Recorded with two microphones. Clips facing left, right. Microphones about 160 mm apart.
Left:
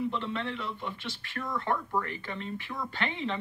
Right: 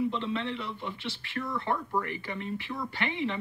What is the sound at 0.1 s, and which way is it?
Speech, 15° right (ahead or behind).